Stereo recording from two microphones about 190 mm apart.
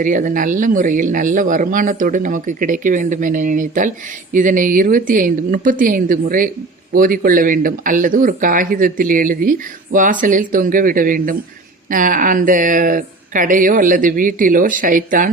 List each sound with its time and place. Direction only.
0.0 s speech: 45° right (ahead or behind)